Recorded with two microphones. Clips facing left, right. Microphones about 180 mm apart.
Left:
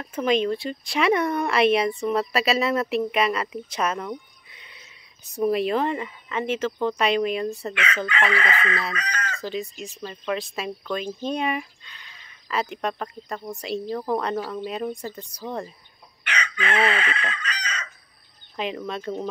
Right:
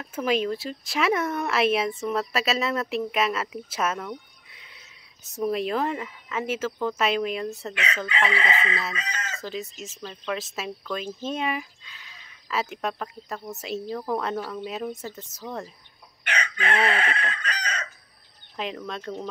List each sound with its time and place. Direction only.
0.0 s speech: 5° right (ahead or behind)
8.3 s chicken: 25° right (ahead or behind)
9.4 s speech: centre (ahead or behind)
16.3 s chicken: 55° right (ahead or behind)
18.6 s speech: centre (ahead or behind)